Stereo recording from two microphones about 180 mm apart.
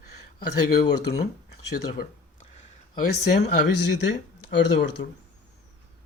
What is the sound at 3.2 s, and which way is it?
Speech, 70° left (ahead or behind).